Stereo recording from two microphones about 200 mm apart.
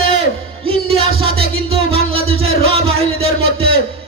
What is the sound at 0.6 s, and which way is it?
Music, 30° right (ahead or behind).